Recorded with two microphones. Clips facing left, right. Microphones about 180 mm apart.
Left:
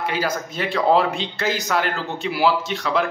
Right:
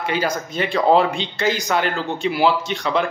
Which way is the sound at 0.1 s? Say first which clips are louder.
Right 2 dB; centre (ahead or behind).